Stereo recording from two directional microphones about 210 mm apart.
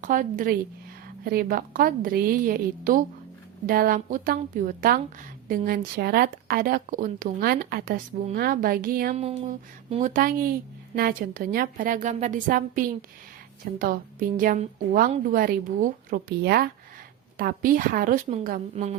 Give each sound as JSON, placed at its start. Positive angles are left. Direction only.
{"t": 0.0, "sound": "a woman's voice", "side_deg": -40}
{"t": 9.1, "sound": "a woman's voice", "side_deg": -30}